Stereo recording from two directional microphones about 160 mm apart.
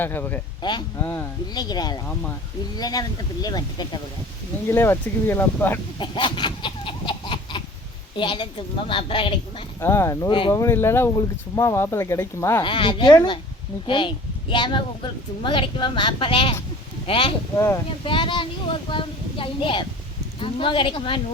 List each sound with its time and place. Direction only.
0.0 s speech: 10° left (ahead or behind)
0.6 s speech: 30° left (ahead or behind)
0.9 s speech: 15° left (ahead or behind)
4.7 s speech: 15° left (ahead or behind)
6.0 s a sound: 30° left (ahead or behind)
8.1 s speech: 30° left (ahead or behind)
9.8 s speech: 15° left (ahead or behind)
10.5 s speech: 15° left (ahead or behind)
12.6 s speech: 30° left (ahead or behind)